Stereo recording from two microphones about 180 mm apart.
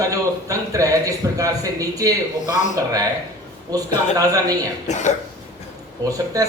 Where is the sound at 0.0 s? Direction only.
20° right (ahead or behind).